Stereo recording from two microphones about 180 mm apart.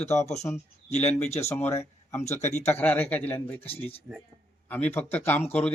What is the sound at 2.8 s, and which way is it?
Speech, 10° left (ahead or behind).